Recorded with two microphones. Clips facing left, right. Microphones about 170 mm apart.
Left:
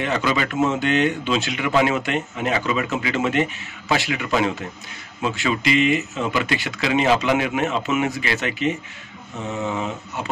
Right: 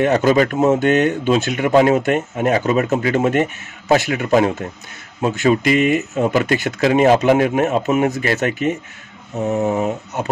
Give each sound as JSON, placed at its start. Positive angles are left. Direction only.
{"t": 0.0, "sound": "speech", "side_deg": -45}